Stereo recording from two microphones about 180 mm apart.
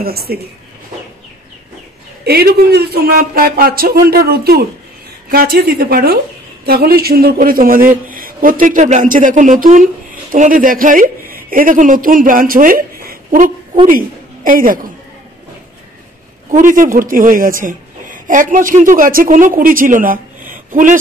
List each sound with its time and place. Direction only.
0.0 s a man's voice: 60° right (ahead or behind)
2.2 s a man's voice: 60° right (ahead or behind)
16.4 s a man's voice: 45° right (ahead or behind)